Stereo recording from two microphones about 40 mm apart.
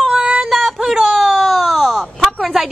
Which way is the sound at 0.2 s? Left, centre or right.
Centre.